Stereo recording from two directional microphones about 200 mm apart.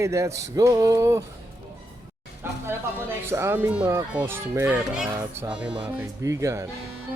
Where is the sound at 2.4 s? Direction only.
10° right (ahead or behind).